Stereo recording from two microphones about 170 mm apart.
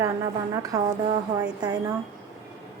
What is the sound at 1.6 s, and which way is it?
Speech, 20° right (ahead or behind).